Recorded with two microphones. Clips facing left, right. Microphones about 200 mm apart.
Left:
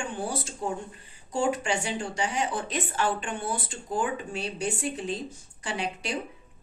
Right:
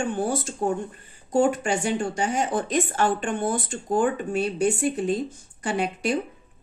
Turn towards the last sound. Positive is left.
turn(degrees=-50)  # may be behind; listen again after turning